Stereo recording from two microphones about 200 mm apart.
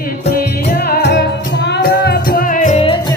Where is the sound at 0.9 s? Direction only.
55° left (ahead or behind); by 3.0 s 30° left (ahead or behind).